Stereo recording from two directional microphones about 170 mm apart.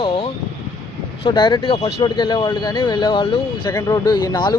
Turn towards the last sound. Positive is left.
turn(degrees=25)  # may be behind; listen again after turning